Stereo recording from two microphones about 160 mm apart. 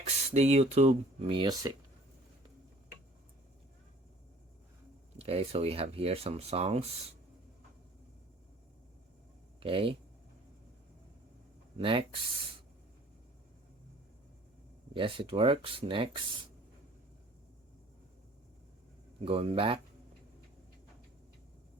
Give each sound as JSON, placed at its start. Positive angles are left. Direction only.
{"t": 0.3, "sound": "speech", "side_deg": -40}
{"t": 5.1, "sound": "speech", "side_deg": -40}
{"t": 9.6, "sound": "speech", "side_deg": -35}
{"t": 11.8, "sound": "speech", "side_deg": -35}
{"t": 14.9, "sound": "speech", "side_deg": -35}
{"t": 19.2, "sound": "speech", "side_deg": -40}